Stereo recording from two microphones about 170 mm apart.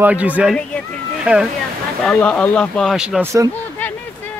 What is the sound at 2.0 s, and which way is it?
Speech, 5° left (ahead or behind).